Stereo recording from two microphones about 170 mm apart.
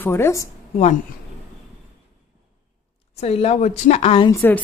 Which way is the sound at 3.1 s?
40° left (ahead or behind).